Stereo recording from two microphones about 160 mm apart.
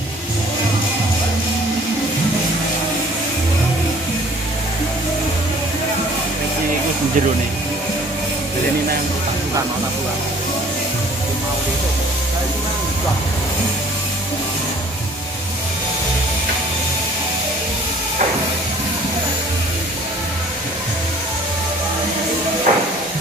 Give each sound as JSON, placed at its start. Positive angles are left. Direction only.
{"t": 22.7, "sound": "hiss", "side_deg": -55}